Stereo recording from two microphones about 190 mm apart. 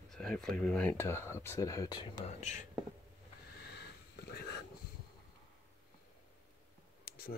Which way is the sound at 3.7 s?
55° left (ahead or behind).